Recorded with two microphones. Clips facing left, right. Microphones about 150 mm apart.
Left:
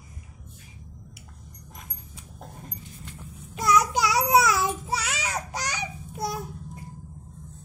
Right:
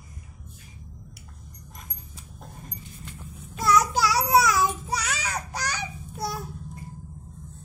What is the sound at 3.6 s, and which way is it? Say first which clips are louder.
Child singing: even; 15° left (ahead or behind).